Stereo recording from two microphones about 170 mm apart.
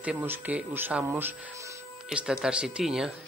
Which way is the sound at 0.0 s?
10° right (ahead or behind).